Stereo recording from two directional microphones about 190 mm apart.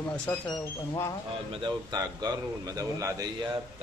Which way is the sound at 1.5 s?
25° right (ahead or behind).